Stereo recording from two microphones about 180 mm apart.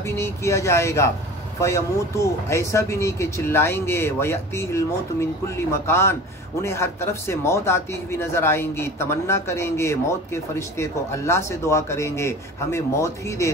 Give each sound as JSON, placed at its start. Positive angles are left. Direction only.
{"t": 0.0, "sound": "speech", "side_deg": 15}